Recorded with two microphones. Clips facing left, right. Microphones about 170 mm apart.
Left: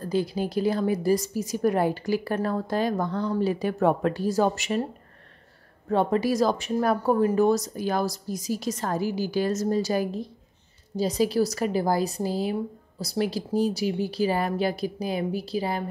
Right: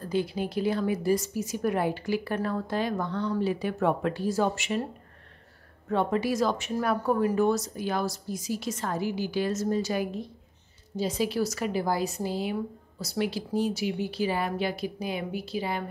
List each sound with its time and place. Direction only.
0.1 s speech: 40° left (ahead or behind)
5.9 s speech: 35° left (ahead or behind)